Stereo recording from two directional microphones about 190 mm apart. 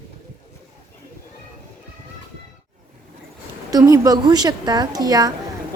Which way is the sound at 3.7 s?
20° right (ahead or behind).